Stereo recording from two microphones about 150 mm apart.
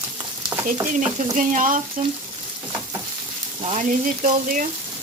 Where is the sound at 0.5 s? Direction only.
20° right (ahead or behind).